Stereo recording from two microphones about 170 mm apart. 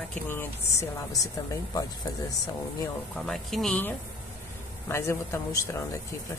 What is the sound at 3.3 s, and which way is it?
Speech, centre (ahead or behind).